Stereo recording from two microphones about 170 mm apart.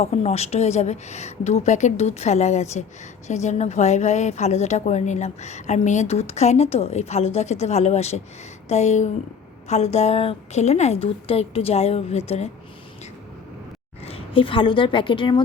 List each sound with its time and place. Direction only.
0.0 s a woman's voice: 35° left (ahead or behind)
14.0 s a woman's voice: 35° left (ahead or behind)